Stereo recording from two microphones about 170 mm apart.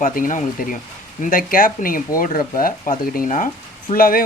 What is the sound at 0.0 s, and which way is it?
Speech, 55° left (ahead or behind).